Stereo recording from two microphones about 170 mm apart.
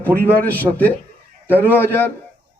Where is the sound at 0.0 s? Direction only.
10° left (ahead or behind).